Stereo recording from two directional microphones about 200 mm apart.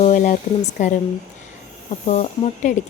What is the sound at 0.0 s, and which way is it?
Speech, 40° left (ahead or behind).